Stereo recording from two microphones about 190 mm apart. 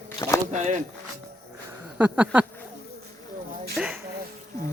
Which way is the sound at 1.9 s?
10° right (ahead or behind).